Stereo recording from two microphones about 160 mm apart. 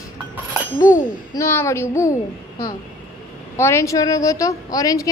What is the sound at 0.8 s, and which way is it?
A woman's voice, 20° left (ahead or behind).